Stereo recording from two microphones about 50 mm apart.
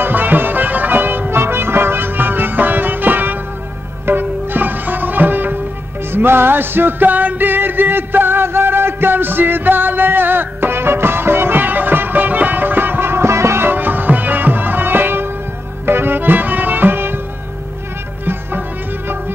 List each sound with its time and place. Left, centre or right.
0.0 s music: right
13.7 s music: right